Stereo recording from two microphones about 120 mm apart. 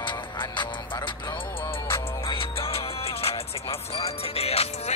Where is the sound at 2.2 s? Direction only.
50° left (ahead or behind).